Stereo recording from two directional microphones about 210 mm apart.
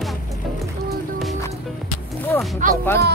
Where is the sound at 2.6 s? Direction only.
35° right (ahead or behind).